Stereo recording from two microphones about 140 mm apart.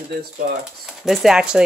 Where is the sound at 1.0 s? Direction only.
5° right (ahead or behind).